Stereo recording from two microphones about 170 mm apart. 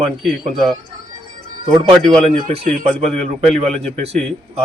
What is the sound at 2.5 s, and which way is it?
A man's voice, 35° right (ahead or behind).